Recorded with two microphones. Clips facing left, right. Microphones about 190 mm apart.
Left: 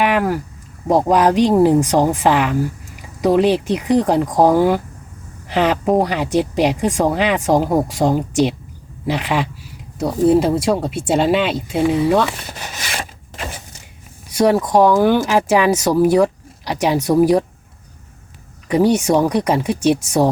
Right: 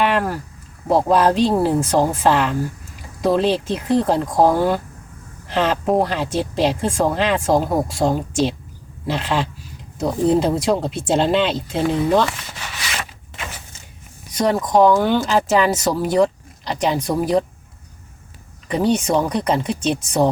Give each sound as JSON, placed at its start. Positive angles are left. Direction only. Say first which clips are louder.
{"t": 0.0, "sound": "speech", "louder": "left 2 dB", "side_deg": 15}
{"t": 12.5, "sound": "a sound", "louder": "left 2 dB", "side_deg": 45}
{"t": 14.3, "sound": "speech", "louder": "left 3 dB", "side_deg": 10}
{"t": 18.7, "sound": "speech", "louder": "left 4 dB", "side_deg": 10}